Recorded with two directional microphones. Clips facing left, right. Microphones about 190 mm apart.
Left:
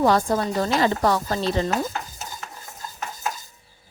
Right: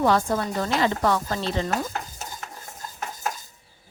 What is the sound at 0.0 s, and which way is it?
A woman's voice, 40° left (ahead or behind).